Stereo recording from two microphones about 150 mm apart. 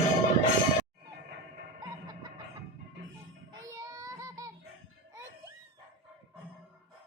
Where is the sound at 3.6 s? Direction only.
25° right (ahead or behind).